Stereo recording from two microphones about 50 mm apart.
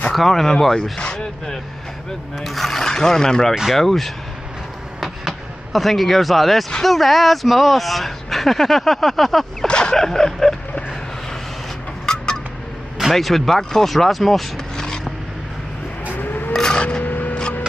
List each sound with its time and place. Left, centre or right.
0.1 s speech: centre
0.9 s speech: centre
2.4 s speech: centre
9.7 s speech: centre
12.1 s a sound: centre
13.1 s speech: centre
16.2 s vehicle: left
16.5 s a sound: centre
17.0 s a sound: left